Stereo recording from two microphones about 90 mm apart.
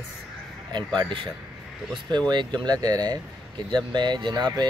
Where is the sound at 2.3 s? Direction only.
55° right (ahead or behind).